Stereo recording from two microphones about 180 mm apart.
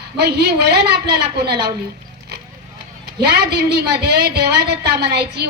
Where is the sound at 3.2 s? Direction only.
65° right (ahead or behind).